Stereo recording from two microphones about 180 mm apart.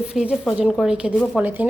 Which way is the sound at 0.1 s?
5° right (ahead or behind).